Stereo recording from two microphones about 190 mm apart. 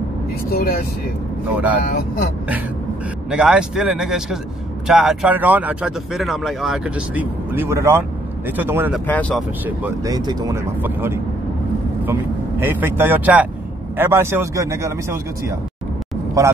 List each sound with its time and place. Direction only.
0.5 s speech: 55° left (ahead or behind)
3.3 s speech: 5° right (ahead or behind)
9.0 s speech: 10° left (ahead or behind)
9.7 s speech: 10° right (ahead or behind)